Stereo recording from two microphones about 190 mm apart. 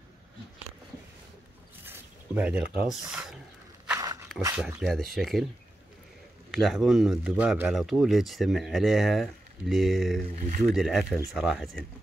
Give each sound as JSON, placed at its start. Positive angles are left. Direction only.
{"t": 1.9, "sound": "speech", "side_deg": -5}
{"t": 3.8, "sound": "walk", "side_deg": -15}
{"t": 4.6, "sound": "speech", "side_deg": -5}
{"t": 6.5, "sound": "speech", "side_deg": 0}